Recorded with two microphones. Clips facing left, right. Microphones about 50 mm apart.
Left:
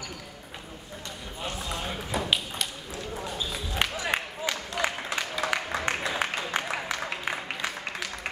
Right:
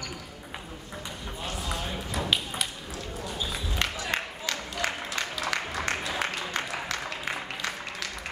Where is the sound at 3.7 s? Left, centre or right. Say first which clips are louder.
Left 3 dB; centre.